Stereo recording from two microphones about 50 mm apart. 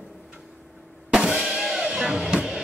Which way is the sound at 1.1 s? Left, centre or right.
Centre.